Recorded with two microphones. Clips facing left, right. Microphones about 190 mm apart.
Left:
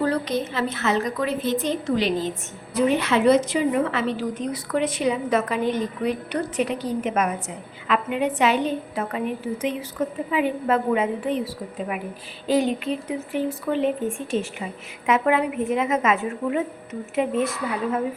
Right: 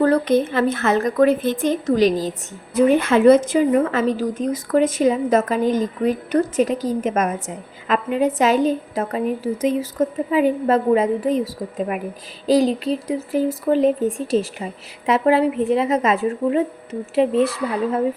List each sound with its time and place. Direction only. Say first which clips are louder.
0.0 s a woman's voice: right 7 dB; 55° right (ahead or behind); by 18.0 s 35° right (ahead or behind)